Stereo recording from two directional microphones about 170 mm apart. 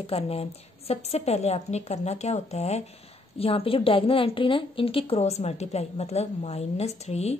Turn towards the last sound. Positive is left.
turn(degrees=40)  # may be behind; listen again after turning